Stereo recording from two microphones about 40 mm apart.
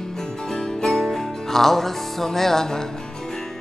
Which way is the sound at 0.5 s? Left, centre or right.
Centre.